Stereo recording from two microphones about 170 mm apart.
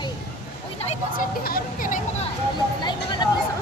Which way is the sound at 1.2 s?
55° left (ahead or behind).